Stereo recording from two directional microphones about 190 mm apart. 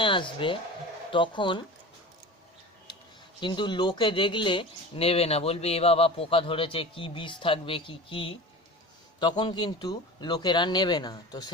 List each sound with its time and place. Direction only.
0.0 s speech: 25° left (ahead or behind)
3.4 s speech: 25° left (ahead or behind)